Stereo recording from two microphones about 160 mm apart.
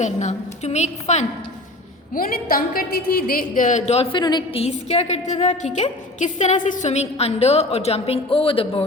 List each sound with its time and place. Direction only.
0.0 s a woman's voice: 45° left (ahead or behind)
2.1 s a woman's voice: 65° left (ahead or behind); by 4.0 s 45° left (ahead or behind)
4.1 s a woman's voice: 25° left (ahead or behind)
4.6 s a woman's voice: 40° left (ahead or behind)